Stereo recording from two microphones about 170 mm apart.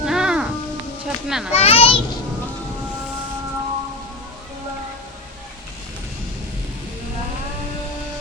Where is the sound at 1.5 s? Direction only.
35° left (ahead or behind).